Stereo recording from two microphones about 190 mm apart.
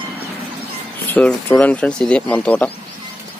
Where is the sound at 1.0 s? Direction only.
5° left (ahead or behind).